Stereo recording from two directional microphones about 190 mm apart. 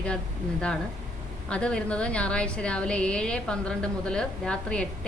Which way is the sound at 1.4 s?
5° left (ahead or behind).